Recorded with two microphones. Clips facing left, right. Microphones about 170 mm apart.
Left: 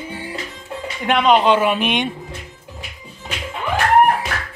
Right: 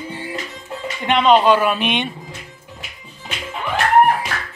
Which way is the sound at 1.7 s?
10° left (ahead or behind).